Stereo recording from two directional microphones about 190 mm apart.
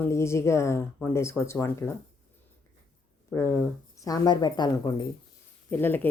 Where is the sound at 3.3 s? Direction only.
15° left (ahead or behind).